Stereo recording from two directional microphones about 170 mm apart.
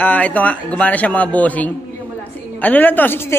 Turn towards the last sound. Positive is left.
turn(degrees=10)  # may be behind; listen again after turning